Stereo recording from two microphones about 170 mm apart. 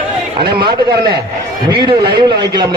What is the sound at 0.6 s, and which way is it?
A man's voice, 25° right (ahead or behind).